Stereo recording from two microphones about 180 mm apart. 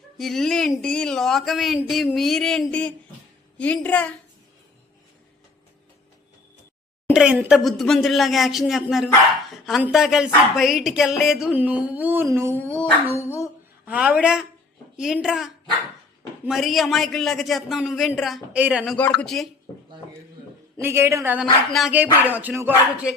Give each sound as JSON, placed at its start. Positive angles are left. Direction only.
{"t": 0.2, "sound": "a woman's voice", "side_deg": 0}
{"t": 7.1, "sound": "speech", "side_deg": -5}
{"t": 13.1, "sound": "a woman's voice", "side_deg": 15}
{"t": 13.8, "sound": "music", "side_deg": -10}
{"t": 14.9, "sound": "speech", "side_deg": -5}
{"t": 16.5, "sound": "speech", "side_deg": 0}
{"t": 18.9, "sound": "speech", "side_deg": 5}
{"t": 20.7, "sound": "music", "side_deg": -15}
{"t": 21.7, "sound": "speech", "side_deg": 0}
{"t": 22.2, "sound": "music", "side_deg": -10}